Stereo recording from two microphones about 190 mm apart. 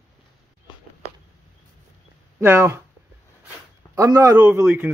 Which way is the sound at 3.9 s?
15° right (ahead or behind).